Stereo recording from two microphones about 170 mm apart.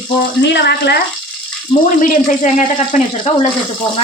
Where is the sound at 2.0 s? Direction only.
50° left (ahead or behind).